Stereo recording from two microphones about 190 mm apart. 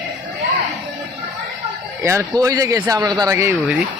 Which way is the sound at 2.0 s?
15° right (ahead or behind).